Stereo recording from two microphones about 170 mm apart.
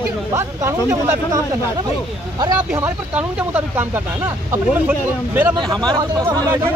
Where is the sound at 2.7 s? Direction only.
10° right (ahead or behind).